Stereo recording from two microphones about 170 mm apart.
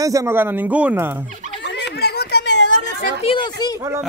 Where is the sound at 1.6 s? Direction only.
85° left.